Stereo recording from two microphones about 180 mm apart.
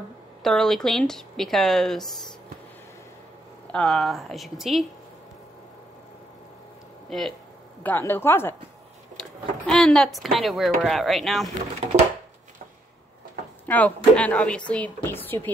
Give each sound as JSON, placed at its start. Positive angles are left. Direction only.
{"t": 0.4, "sound": "speech", "side_deg": 0}
{"t": 3.7, "sound": "speech", "side_deg": 5}
{"t": 7.1, "sound": "speech", "side_deg": 0}
{"t": 9.1, "sound": "a sound", "side_deg": 5}
{"t": 10.3, "sound": "speech", "side_deg": 0}
{"t": 13.7, "sound": "speech", "side_deg": 10}